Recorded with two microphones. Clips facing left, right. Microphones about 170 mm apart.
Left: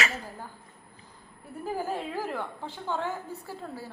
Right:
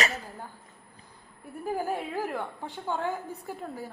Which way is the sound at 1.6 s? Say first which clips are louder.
Right 1 dB; 10° right (ahead or behind).